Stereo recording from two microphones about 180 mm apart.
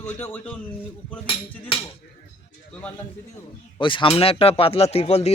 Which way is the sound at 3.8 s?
25° left (ahead or behind).